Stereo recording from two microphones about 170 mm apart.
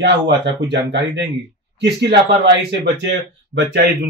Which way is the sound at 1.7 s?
85° right.